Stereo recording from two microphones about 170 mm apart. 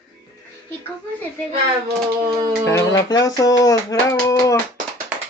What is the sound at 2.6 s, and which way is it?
Speech, 20° left (ahead or behind).